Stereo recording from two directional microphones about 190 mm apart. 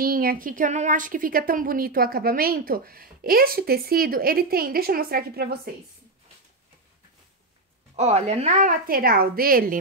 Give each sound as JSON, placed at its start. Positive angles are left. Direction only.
{"t": 0.0, "sound": "a woman's voice", "side_deg": -50}
{"t": 7.9, "sound": "a woman's voice", "side_deg": -35}